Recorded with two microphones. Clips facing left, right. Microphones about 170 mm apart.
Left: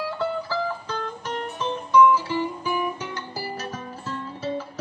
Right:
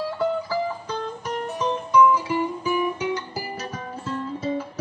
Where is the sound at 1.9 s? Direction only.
10° right (ahead or behind).